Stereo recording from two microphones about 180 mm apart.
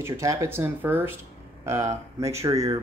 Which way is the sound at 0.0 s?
15° right (ahead or behind).